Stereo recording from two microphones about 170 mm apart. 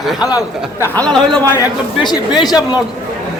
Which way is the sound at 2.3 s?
25° left (ahead or behind).